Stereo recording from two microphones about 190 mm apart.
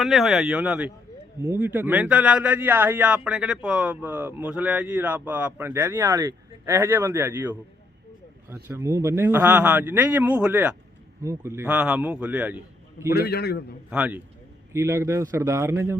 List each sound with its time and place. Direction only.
0.0 s speech: centre (ahead or behind)
13.1 s a man's voice: 55° left (ahead or behind)
13.9 s speech: 5° right (ahead or behind)